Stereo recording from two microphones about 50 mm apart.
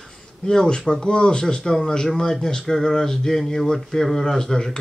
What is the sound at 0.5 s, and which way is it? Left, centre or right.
A man's voice, centre.